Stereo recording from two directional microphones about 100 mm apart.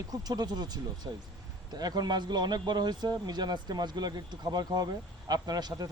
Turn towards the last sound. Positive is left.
turn(degrees=-40)  # may be behind; listen again after turning